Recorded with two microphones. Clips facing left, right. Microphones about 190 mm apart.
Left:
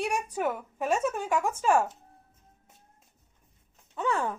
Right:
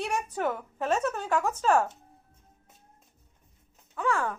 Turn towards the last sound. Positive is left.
turn(degrees=25)  # may be behind; listen again after turning